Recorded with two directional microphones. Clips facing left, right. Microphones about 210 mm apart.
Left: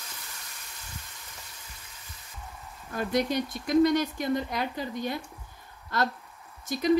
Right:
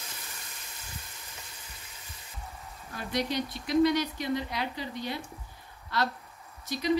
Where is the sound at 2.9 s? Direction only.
50° left (ahead or behind).